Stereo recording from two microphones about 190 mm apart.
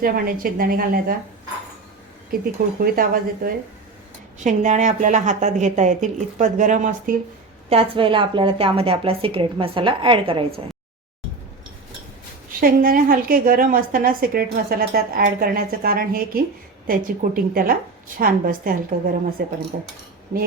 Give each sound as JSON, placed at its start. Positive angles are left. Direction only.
{"t": 0.0, "sound": "a woman's voice", "side_deg": -50}
{"t": 2.3, "sound": "a woman's voice", "side_deg": -50}
{"t": 7.7, "sound": "a woman's voice", "side_deg": -30}
{"t": 12.5, "sound": "a woman's voice", "side_deg": -50}